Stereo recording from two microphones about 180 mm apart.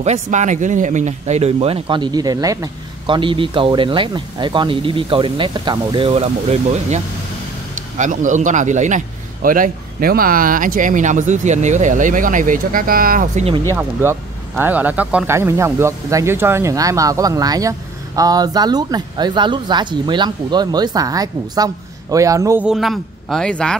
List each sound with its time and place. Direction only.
0.0 s speech: 40° right (ahead or behind)
8.0 s a man's voice: 45° right (ahead or behind)
14.6 s speech: 10° right (ahead or behind)
22.7 s speech: centre (ahead or behind)